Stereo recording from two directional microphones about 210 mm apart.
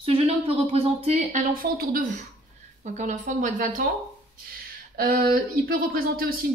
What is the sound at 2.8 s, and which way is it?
A woman's voice, 35° right (ahead or behind).